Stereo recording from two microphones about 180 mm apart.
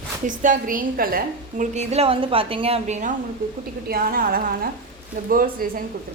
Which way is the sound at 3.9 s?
55° right (ahead or behind).